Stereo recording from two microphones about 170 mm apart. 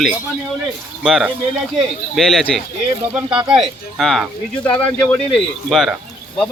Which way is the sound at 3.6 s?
Centre (ahead or behind).